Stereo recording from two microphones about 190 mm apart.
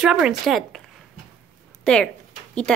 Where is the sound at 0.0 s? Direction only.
5° right (ahead or behind).